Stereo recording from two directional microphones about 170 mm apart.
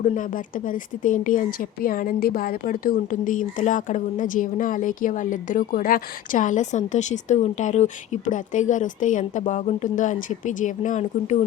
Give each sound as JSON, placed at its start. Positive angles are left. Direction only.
{"t": 0.0, "sound": "speech", "side_deg": 50}